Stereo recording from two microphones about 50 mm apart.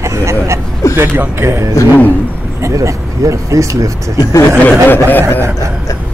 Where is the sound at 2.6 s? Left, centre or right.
Right.